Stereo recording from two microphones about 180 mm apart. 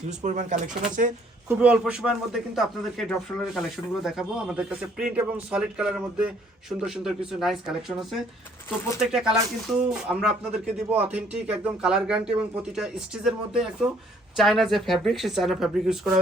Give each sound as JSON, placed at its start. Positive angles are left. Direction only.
{"t": 0.1, "sound": "speech", "side_deg": -40}
{"t": 1.5, "sound": "a man's voice", "side_deg": -5}